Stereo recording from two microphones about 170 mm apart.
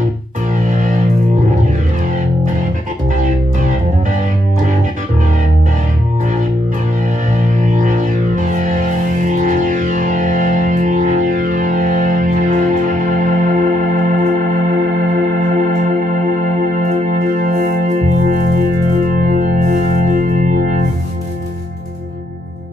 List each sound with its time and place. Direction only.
0.7 s music: 50° right (ahead or behind)
7.3 s music: 50° right (ahead or behind)
16.8 s music: 50° right (ahead or behind)